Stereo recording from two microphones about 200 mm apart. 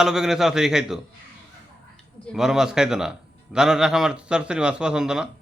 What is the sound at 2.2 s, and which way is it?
A man's voice, centre (ahead or behind).